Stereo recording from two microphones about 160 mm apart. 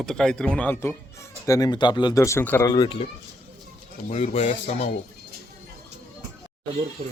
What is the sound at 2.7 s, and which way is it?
Speech, 25° left (ahead or behind).